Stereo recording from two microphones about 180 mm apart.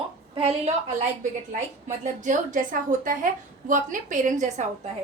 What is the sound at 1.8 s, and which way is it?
A woman's voice, 40° right (ahead or behind).